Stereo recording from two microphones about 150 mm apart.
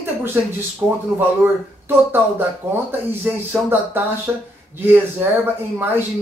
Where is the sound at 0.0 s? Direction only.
15° right (ahead or behind).